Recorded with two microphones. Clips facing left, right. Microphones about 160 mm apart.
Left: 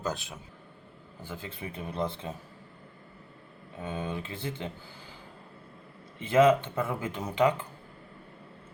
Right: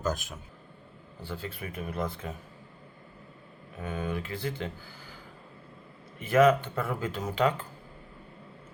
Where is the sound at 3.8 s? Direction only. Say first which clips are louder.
Right 1 dB; 25° left (ahead or behind).